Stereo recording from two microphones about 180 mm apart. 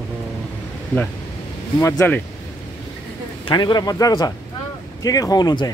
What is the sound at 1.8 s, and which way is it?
Speech, 15° left (ahead or behind).